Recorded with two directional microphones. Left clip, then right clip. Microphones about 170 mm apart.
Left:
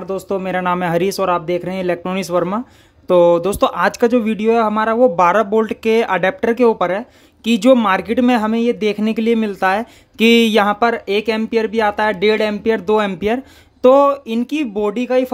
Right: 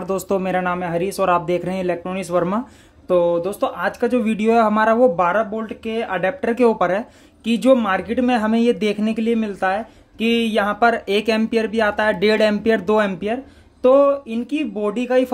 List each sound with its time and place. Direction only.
0.0 s speech: 5° left (ahead or behind)
0.7 s speech: 30° left (ahead or behind)
1.2 s speech: 10° left (ahead or behind)
3.1 s speech: 35° left (ahead or behind)
4.1 s speech: 15° left (ahead or behind)
5.1 s speech: 25° left (ahead or behind)
5.5 s speech: 40° left (ahead or behind)
6.5 s speech: 10° left (ahead or behind)
7.4 s speech: 25° left (ahead or behind); by 8.9 s 10° left (ahead or behind)
9.0 s speech: 25° left (ahead or behind)
10.8 s speech: 15° left (ahead or behind)